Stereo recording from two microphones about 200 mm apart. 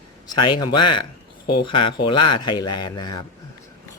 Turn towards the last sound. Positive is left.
turn(degrees=20)  # may be behind; listen again after turning